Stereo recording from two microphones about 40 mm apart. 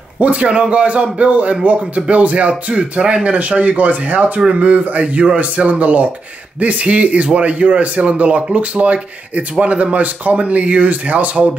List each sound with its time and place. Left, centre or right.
0.2 s a man's voice: right